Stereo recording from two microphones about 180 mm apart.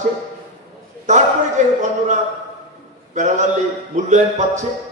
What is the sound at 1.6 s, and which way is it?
Speech, 40° right (ahead or behind).